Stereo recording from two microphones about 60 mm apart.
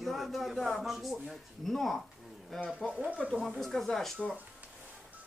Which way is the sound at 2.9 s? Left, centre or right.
Right.